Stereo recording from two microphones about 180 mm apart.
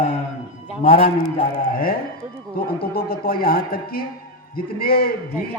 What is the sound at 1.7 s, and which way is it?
Speech, 55° left (ahead or behind).